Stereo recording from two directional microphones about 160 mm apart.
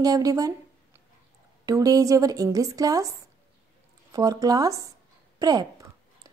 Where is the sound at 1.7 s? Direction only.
25° right (ahead or behind).